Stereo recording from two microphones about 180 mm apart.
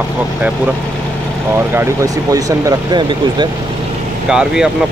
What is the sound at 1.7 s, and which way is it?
Speech, 15° right (ahead or behind).